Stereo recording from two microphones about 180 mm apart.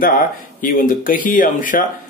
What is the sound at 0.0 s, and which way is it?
Speech, 50° left (ahead or behind).